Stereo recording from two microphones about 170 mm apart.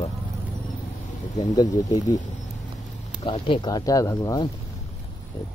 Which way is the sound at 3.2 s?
30° left (ahead or behind).